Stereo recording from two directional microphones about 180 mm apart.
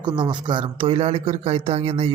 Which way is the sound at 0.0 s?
25° right (ahead or behind).